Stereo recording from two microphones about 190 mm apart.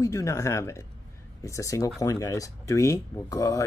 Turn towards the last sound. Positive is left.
turn(degrees=15)  # may be behind; listen again after turning